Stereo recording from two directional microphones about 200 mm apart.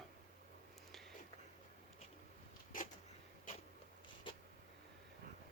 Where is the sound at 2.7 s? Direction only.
40° left (ahead or behind).